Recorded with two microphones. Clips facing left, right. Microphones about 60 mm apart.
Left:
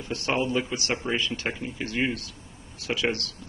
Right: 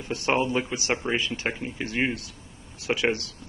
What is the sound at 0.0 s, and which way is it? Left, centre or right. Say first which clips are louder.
Speech: right 2 dB; right.